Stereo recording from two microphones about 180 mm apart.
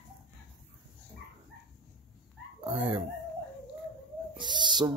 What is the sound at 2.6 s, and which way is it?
Speech, 30° right (ahead or behind).